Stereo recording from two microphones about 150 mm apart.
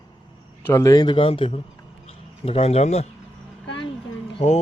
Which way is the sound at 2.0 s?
40° left (ahead or behind).